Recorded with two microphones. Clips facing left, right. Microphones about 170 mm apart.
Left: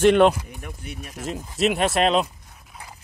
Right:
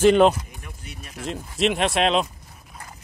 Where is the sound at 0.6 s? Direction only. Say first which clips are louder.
Left 5 dB; 55° left (ahead or behind).